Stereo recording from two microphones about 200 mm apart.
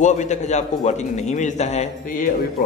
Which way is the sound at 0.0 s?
35° left (ahead or behind).